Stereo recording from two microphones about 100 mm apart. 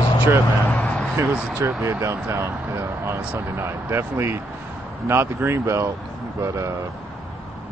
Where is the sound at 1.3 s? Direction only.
15° right (ahead or behind); by 6.7 s 30° right (ahead or behind).